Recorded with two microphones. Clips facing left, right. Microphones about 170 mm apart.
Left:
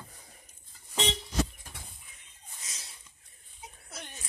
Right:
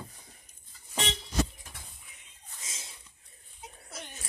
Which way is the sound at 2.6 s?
25° right (ahead or behind).